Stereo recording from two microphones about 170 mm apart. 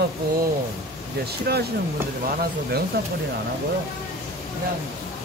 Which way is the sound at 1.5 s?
70° right (ahead or behind).